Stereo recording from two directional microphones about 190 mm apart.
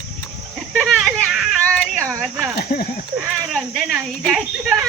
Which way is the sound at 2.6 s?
50° left (ahead or behind).